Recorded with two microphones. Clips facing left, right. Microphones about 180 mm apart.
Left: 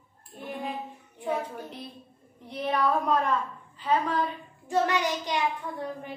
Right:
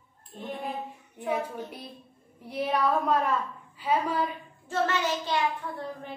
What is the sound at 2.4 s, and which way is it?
A woman's voice, 5° right (ahead or behind).